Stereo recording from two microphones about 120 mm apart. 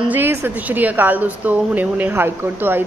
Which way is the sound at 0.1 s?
15° right (ahead or behind).